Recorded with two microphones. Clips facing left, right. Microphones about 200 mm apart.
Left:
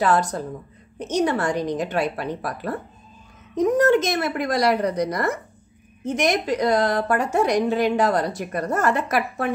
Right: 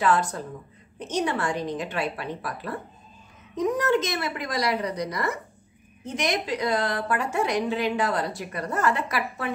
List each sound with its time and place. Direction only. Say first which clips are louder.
0.0 s a woman's voice: left 3 dB; 40° left (ahead or behind)